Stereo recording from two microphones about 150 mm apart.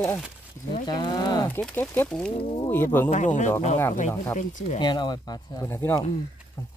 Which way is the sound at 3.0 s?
55° left (ahead or behind).